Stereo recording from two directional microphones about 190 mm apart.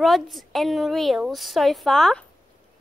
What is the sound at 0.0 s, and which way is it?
A woman's voice, centre (ahead or behind).